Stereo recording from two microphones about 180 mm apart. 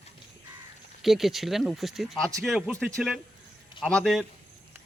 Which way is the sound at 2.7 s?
15° right (ahead or behind).